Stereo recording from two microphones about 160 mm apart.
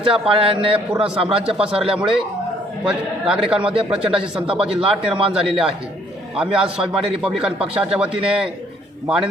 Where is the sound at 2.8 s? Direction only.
5° right (ahead or behind).